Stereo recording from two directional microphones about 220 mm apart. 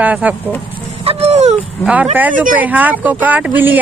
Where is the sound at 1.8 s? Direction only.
5° right (ahead or behind).